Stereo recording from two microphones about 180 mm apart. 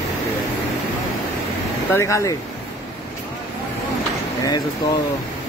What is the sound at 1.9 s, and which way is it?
Speech, 15° left (ahead or behind).